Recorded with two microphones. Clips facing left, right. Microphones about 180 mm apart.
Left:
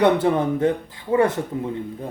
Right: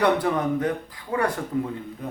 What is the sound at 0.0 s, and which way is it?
A man's voice, 25° left (ahead or behind).